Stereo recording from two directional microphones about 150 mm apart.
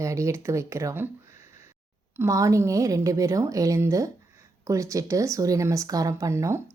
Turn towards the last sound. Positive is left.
turn(degrees=-20)  # may be behind; listen again after turning